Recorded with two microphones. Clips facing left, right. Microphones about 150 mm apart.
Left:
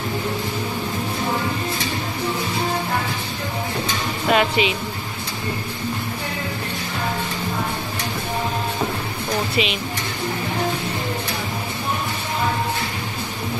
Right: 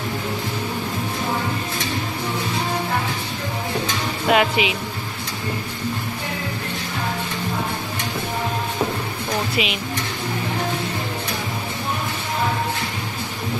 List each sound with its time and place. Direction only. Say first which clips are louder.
4.3 s speech: even; 10° right (ahead or behind)
9.6 s speech: left 3 dB; 5° right (ahead or behind)